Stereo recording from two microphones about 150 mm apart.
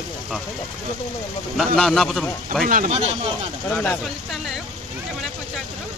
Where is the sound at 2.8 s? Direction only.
45° right (ahead or behind).